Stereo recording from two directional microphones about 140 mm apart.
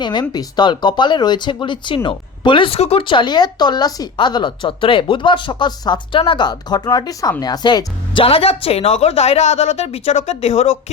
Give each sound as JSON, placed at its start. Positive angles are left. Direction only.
{"t": 0.0, "sound": "speech", "side_deg": 30}